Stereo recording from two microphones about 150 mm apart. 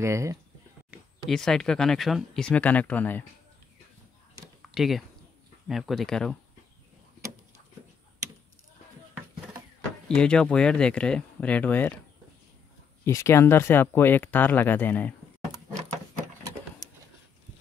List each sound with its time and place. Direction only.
0.0 s speech: 20° right (ahead or behind)
0.8 s speech: centre (ahead or behind)
4.7 s speech: centre (ahead or behind)
10.0 s speech: 5° left (ahead or behind)
13.0 s speech: 15° left (ahead or behind)